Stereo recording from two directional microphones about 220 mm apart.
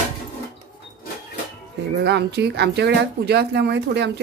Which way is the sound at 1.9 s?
50° right (ahead or behind).